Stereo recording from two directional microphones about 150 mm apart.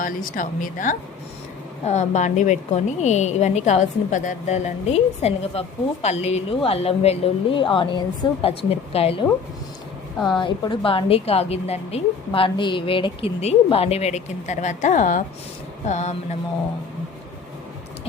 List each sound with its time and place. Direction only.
0.0 s speech: 65° left (ahead or behind)
1.9 s a woman's voice: 50° left (ahead or behind)
10.3 s a woman's voice: 30° left (ahead or behind); by 16.1 s 50° left (ahead or behind)